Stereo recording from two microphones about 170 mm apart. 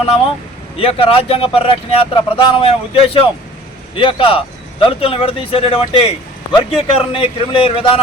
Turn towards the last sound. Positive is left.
turn(degrees=35)  # may be behind; listen again after turning